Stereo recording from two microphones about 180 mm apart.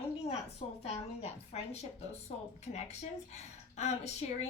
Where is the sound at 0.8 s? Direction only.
35° left (ahead or behind).